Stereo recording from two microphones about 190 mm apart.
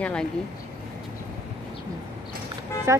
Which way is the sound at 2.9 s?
15° right (ahead or behind).